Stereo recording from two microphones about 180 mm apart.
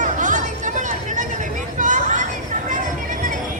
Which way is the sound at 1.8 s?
45° right (ahead or behind).